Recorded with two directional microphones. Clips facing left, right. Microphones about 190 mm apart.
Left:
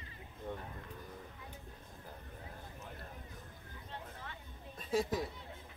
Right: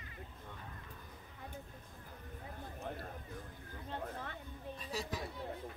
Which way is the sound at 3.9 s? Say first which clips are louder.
Right 6 dB; 50° right (ahead or behind).